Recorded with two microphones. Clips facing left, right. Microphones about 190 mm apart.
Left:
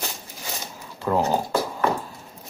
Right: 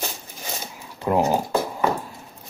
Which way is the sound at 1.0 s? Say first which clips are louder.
Right 2 dB; 15° right (ahead or behind).